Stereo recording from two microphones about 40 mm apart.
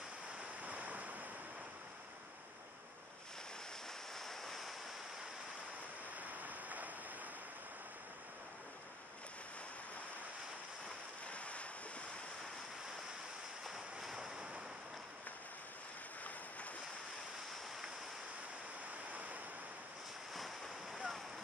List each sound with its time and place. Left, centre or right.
0.7 s waves: right
4.3 s waves: centre
6.3 s a sound: right
11.2 s waves: left
13.7 s a sound: centre
20.3 s waves: centre